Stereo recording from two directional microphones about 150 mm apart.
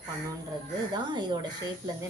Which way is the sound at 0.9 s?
30° right (ahead or behind).